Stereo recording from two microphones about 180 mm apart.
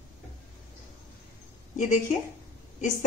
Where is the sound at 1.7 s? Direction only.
45° left (ahead or behind).